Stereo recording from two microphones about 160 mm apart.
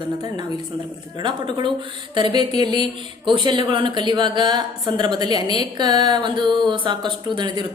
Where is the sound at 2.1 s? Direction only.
30° right (ahead or behind).